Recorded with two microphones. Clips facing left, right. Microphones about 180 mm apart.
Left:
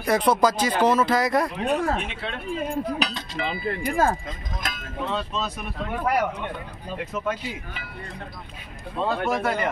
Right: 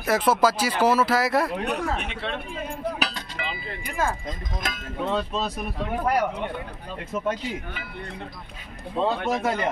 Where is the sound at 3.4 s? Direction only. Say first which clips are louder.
Left 8 dB; 40° left (ahead or behind).